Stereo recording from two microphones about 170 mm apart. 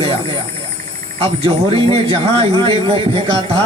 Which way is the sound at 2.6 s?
30° right (ahead or behind).